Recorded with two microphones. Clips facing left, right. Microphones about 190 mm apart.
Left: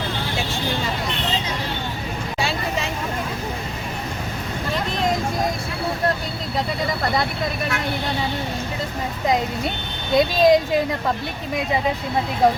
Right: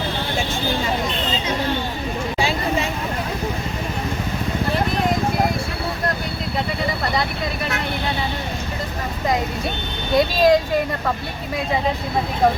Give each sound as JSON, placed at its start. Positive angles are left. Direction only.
{"t": 10.2, "sound": "vehicle", "side_deg": 20}